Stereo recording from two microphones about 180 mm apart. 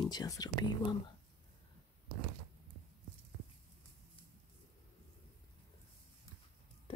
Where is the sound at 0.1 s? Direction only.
20° left (ahead or behind).